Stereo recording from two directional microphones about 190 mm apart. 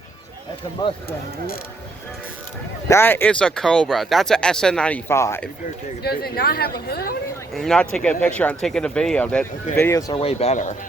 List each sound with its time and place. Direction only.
2.9 s speech: 10° left (ahead or behind)
6.0 s speech: 55° left (ahead or behind)
7.5 s speech: centre (ahead or behind)
10.2 s speech: 35° left (ahead or behind)